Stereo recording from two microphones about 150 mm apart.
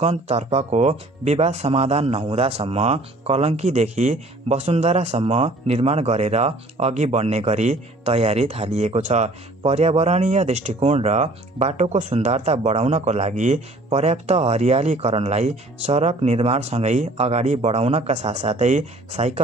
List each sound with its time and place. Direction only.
0.0 s speech: 45° right (ahead or behind)